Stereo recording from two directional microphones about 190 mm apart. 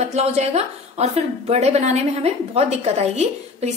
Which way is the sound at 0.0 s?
35° right (ahead or behind).